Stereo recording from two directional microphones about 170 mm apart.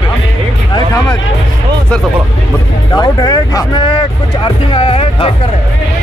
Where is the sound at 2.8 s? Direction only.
25° left (ahead or behind).